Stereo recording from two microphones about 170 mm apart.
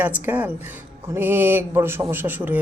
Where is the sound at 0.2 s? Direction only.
10° right (ahead or behind).